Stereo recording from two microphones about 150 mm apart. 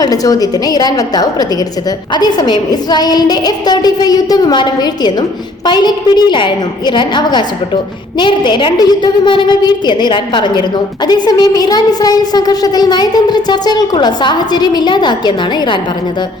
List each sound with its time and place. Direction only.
0.0 s a woman's voice: 25° left (ahead or behind)